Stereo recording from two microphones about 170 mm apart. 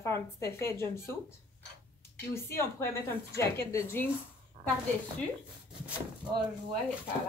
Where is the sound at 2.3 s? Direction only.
15° left (ahead or behind).